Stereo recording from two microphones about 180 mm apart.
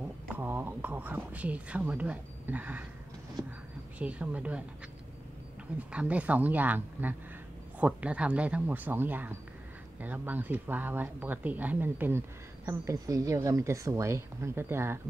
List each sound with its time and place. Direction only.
0.3 s speech: 10° right (ahead or behind)
4.0 s speech: 10° right (ahead or behind)
5.8 s speech: 5° right (ahead or behind)